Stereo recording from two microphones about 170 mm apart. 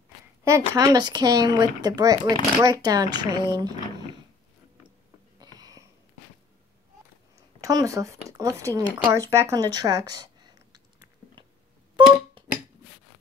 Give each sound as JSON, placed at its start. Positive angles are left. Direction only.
{"t": 0.4, "sound": "speech", "side_deg": -20}
{"t": 5.4, "sound": "a sound", "side_deg": -20}
{"t": 7.6, "sound": "speech", "side_deg": -20}
{"t": 12.4, "sound": "music", "side_deg": -30}